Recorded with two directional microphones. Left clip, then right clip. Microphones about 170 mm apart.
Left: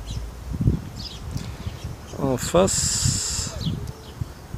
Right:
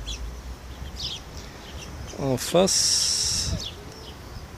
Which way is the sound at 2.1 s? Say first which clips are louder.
Left 2 dB; centre (ahead or behind).